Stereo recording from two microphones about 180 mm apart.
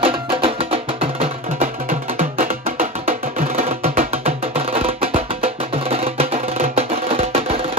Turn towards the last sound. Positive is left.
turn(degrees=-35)  # may be behind; listen again after turning